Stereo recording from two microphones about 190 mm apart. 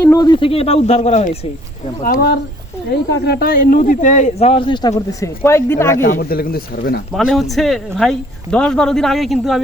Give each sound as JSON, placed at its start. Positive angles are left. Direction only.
{"t": 0.0, "sound": "speech", "side_deg": 20}
{"t": 3.1, "sound": "speech", "side_deg": 60}
{"t": 6.0, "sound": "speech", "side_deg": 50}
{"t": 7.1, "sound": "speech", "side_deg": 0}